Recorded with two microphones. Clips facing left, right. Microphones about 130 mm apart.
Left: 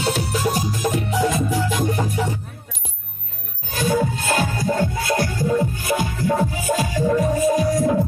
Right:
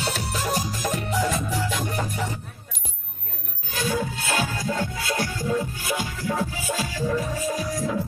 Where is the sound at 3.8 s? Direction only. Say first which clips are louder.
Left 6 dB; 45° left (ahead or behind).